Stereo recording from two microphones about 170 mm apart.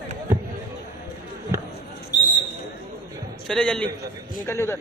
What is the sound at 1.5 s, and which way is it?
Basketball bounce, 15° right (ahead or behind).